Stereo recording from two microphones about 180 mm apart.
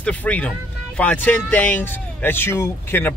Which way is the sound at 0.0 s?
10° left (ahead or behind).